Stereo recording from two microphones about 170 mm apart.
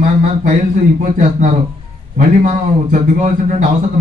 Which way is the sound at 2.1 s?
50° right (ahead or behind).